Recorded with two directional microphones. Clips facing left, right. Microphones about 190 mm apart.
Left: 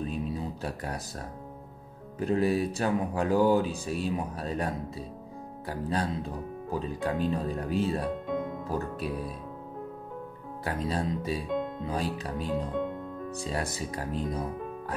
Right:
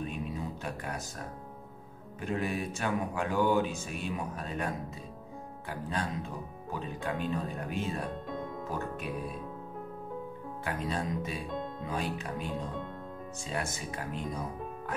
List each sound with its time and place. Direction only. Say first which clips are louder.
0.0 s a sound: left 4 dB; 35° left (ahead or behind)
2.1 s speech: left 7 dB; 35° left (ahead or behind)
10.6 s speech: left 4 dB; 35° left (ahead or behind)